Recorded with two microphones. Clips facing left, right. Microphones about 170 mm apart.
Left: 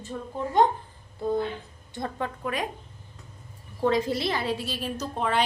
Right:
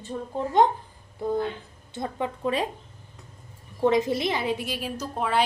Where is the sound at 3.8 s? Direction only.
20° right (ahead or behind); by 5.4 s 5° right (ahead or behind).